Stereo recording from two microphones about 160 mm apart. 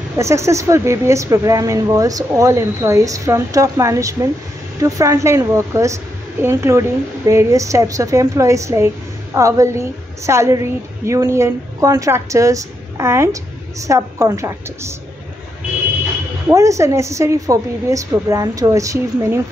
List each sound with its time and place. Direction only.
0.2 s a woman's voice: 20° right (ahead or behind)
16.4 s a woman's voice: 20° right (ahead or behind)